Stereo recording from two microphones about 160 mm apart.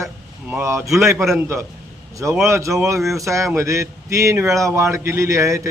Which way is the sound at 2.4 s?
20° right (ahead or behind).